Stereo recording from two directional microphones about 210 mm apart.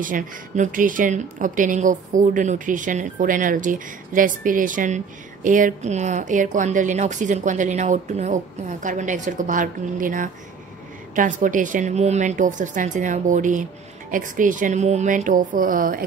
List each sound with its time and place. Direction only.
0.0 s speech: 40° right (ahead or behind)